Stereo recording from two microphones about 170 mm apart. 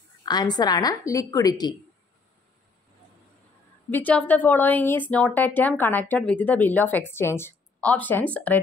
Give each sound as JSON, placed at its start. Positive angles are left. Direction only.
{"t": 0.2, "sound": "a woman's voice", "side_deg": 25}
{"t": 3.9, "sound": "speech", "side_deg": 10}